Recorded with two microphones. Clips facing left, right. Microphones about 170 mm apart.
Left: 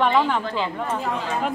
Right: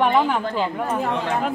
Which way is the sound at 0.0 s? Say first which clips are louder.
Right 1 dB; 10° right (ahead or behind).